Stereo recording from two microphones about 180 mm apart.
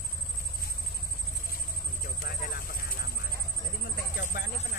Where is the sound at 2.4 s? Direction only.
50° left (ahead or behind).